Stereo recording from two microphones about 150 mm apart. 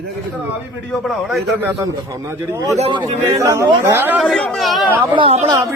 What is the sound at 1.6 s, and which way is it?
Speech, 20° right (ahead or behind).